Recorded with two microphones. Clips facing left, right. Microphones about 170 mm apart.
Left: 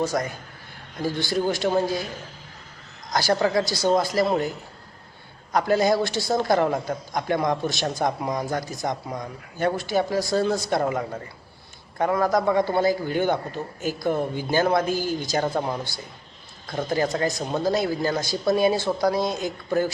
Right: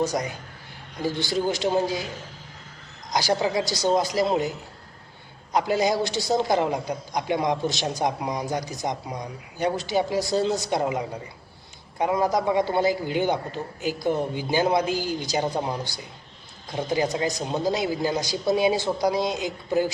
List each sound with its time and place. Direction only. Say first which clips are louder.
0.0 s a man's voice: even; 20° right (ahead or behind)
3.1 s a man's voice: left 2 dB; 15° right (ahead or behind)